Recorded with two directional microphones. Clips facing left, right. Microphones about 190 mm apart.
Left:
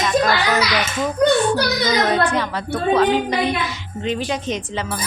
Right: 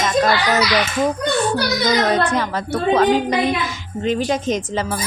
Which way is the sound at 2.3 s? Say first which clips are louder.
Right 1 dB; 45° right (ahead or behind).